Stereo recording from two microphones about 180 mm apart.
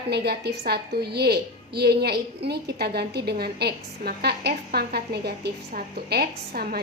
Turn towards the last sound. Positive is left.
turn(degrees=-60)  # may be behind; listen again after turning